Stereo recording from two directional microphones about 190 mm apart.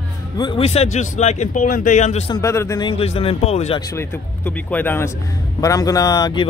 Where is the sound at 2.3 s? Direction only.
15° left (ahead or behind); by 3.8 s 35° left (ahead or behind).